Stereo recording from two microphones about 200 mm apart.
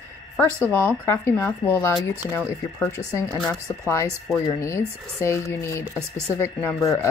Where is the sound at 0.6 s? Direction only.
10° left (ahead or behind).